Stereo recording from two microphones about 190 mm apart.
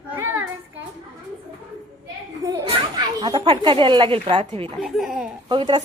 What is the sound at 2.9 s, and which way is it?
A woman's voice, 25° right (ahead or behind).